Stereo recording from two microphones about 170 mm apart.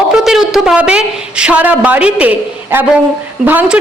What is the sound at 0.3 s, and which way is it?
A woman's voice, centre (ahead or behind).